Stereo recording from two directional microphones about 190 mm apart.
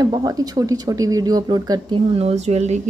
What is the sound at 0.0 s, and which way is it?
Speech, 20° right (ahead or behind).